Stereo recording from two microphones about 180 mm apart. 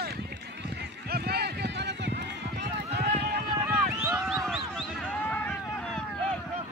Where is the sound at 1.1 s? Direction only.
60° right (ahead or behind).